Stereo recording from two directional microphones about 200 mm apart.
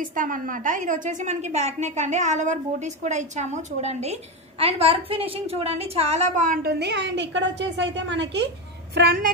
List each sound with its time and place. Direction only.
0.0 s a woman's voice: 40° right (ahead or behind); by 8.5 s 60° right (ahead or behind)
8.9 s a woman's voice: 50° right (ahead or behind)